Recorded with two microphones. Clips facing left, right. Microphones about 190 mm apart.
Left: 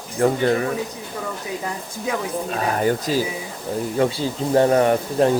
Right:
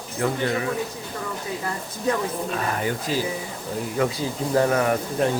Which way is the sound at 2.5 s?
40° left (ahead or behind).